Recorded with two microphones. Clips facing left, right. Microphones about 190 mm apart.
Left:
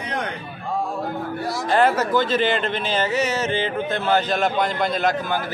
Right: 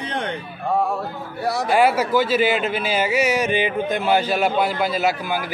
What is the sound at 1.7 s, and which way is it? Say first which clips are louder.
Speech: even; 10° right (ahead or behind).